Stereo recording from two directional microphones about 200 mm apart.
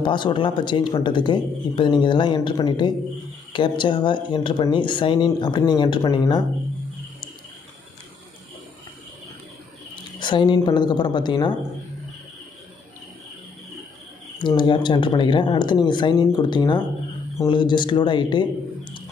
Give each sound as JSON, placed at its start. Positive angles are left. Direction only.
{"t": 0.0, "sound": "speech", "side_deg": 25}
{"t": 10.1, "sound": "speech", "side_deg": 25}
{"t": 14.4, "sound": "speech", "side_deg": 25}